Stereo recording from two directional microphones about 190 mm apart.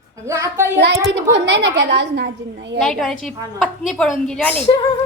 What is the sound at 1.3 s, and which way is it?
A child's voice, 70° right (ahead or behind).